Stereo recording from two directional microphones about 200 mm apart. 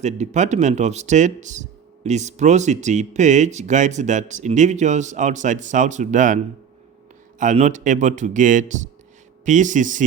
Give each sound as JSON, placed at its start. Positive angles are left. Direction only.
{"t": 0.0, "sound": "speech", "side_deg": -35}